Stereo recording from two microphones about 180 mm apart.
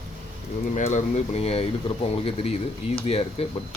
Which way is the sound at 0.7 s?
40° left (ahead or behind).